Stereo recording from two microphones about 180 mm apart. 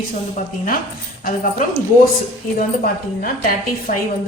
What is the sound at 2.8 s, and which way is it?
Speech, 50° left (ahead or behind).